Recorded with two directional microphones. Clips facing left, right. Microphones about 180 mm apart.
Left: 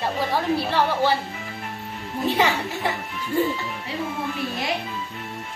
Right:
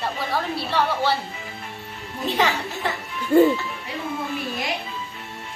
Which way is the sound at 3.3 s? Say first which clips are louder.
Right 8 dB; 55° right (ahead or behind).